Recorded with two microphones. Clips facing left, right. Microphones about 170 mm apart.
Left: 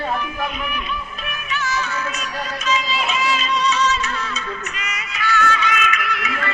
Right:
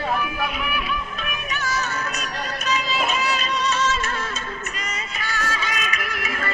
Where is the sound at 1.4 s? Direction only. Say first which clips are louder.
Left 3 dB; 40° right (ahead or behind).